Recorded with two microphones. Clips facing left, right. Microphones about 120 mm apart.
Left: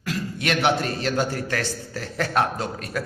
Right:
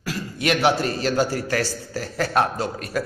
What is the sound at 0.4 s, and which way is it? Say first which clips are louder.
A man's voice: right 3 dB; 5° right (ahead or behind).